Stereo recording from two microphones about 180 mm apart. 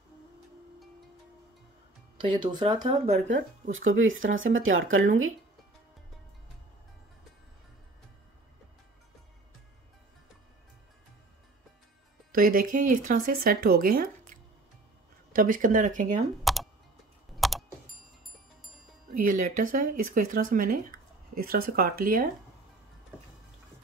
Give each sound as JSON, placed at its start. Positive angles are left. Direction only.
{"t": 2.1, "sound": "speech", "side_deg": -25}
{"t": 3.3, "sound": "speech", "side_deg": -45}
{"t": 3.7, "sound": "speech", "side_deg": -90}
{"t": 12.3, "sound": "speech", "side_deg": -50}
{"t": 15.3, "sound": "speech", "side_deg": -50}
{"t": 16.5, "sound": "music", "side_deg": 0}
{"t": 19.0, "sound": "speech", "side_deg": -45}